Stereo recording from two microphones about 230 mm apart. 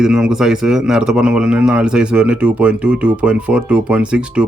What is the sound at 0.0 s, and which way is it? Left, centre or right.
A man's voice, centre.